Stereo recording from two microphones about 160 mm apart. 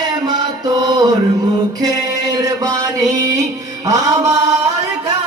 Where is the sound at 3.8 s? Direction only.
20° right (ahead or behind).